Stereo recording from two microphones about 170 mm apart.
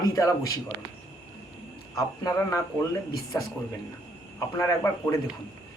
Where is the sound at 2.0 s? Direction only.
20° left (ahead or behind).